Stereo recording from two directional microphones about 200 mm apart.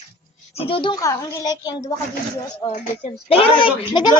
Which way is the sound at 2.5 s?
30° left (ahead or behind).